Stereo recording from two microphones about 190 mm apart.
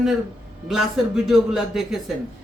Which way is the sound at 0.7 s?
Centre (ahead or behind).